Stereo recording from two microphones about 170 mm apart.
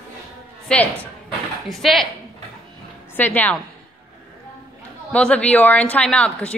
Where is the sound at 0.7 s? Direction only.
5° left (ahead or behind).